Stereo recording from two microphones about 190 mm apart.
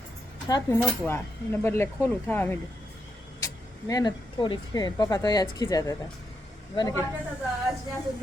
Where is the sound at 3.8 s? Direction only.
20° left (ahead or behind).